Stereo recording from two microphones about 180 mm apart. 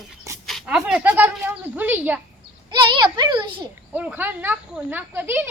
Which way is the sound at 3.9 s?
10° right (ahead or behind).